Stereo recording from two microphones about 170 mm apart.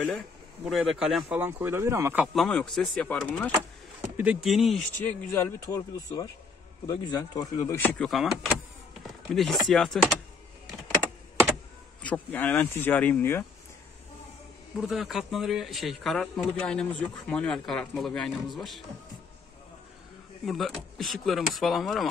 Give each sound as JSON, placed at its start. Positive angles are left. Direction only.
{"t": 0.7, "sound": "a man's voice", "side_deg": 0}
{"t": 1.4, "sound": "speech", "side_deg": -15}
{"t": 2.3, "sound": "a man's voice", "side_deg": 5}
{"t": 4.0, "sound": "a sound", "side_deg": -10}
{"t": 4.5, "sound": "a man's voice", "side_deg": 0}
{"t": 5.0, "sound": "speech", "side_deg": 10}
{"t": 7.9, "sound": "a man's voice", "side_deg": 5}
{"t": 12.0, "sound": "speech", "side_deg": 10}
{"t": 14.8, "sound": "a man's voice", "side_deg": 0}
{"t": 20.4, "sound": "a man's voice", "side_deg": 0}